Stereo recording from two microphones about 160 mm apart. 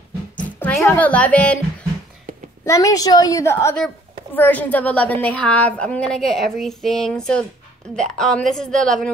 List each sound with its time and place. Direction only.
0.6 s speech: 10° left (ahead or behind)
2.6 s a woman's voice: 20° left (ahead or behind); by 9.1 s 5° left (ahead or behind)